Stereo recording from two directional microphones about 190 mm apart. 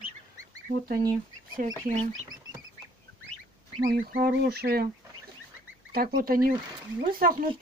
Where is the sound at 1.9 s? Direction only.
45° right (ahead or behind).